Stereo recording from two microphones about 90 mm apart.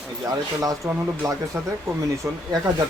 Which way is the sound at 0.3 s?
40° right (ahead or behind).